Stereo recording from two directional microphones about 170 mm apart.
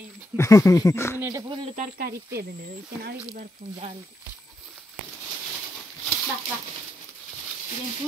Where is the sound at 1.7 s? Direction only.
55° right (ahead or behind).